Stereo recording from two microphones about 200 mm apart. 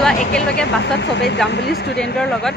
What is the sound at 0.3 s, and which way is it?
Speech, 55° left (ahead or behind).